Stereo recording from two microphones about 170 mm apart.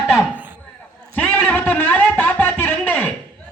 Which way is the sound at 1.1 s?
10° left (ahead or behind).